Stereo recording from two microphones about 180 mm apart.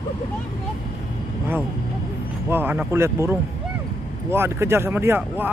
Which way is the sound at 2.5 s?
10° right (ahead or behind).